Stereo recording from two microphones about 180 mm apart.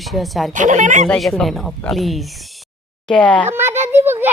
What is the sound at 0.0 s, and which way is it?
Speech, centre (ahead or behind).